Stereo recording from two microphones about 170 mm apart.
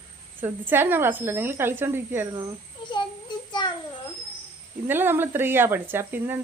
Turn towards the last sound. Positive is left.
turn(degrees=-10)  # may be behind; listen again after turning